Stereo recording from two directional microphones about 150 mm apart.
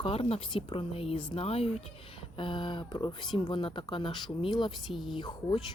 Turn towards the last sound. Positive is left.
turn(degrees=30)  # may be behind; listen again after turning